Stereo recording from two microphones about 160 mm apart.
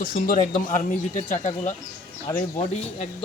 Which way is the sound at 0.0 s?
55° left (ahead or behind).